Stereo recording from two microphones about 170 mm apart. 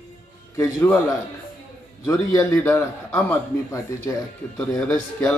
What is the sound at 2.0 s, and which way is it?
A man's voice, 20° left (ahead or behind).